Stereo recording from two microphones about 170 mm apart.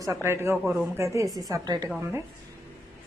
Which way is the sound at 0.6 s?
Centre (ahead or behind).